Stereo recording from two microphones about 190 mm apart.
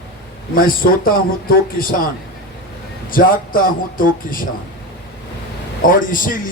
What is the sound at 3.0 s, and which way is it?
A man's voice, 50° left (ahead or behind).